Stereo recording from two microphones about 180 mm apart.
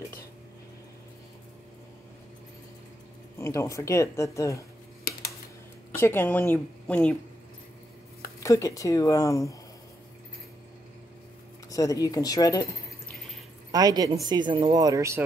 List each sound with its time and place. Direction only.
3.3 s speech: 15° left (ahead or behind)
5.9 s a woman's voice: 10° left (ahead or behind)
8.4 s speech: 15° left (ahead or behind)
11.7 s speech: 20° left (ahead or behind)
13.7 s speech: 20° right (ahead or behind)